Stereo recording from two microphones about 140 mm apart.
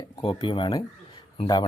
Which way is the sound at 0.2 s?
40° left (ahead or behind).